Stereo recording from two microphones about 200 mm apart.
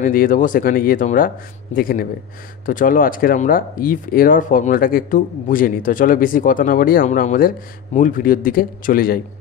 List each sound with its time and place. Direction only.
0.0 s speech: 45° left (ahead or behind)